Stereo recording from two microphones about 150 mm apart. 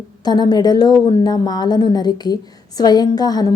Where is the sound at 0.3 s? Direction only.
25° left (ahead or behind).